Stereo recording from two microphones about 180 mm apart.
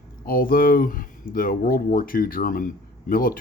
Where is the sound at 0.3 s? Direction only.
50° left (ahead or behind).